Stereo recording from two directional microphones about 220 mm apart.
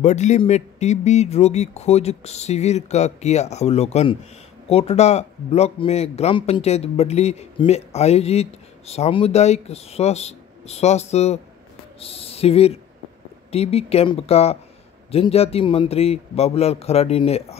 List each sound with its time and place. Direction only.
0.0 s speech: 30° left (ahead or behind)